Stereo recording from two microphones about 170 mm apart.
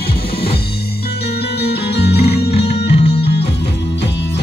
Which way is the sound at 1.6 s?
75° left (ahead or behind).